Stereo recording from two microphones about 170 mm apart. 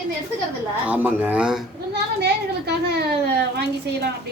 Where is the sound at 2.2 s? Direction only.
75° right (ahead or behind).